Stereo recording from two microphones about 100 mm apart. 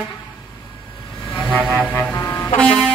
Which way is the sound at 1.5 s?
15° left (ahead or behind).